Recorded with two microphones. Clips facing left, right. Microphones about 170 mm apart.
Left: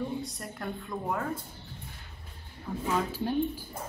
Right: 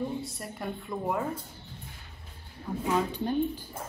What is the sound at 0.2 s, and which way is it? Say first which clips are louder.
A woman's voice: right 1 dB; centre (ahead or behind).